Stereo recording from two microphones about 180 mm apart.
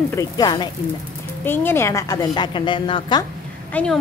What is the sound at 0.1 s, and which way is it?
Speech, 20° left (ahead or behind).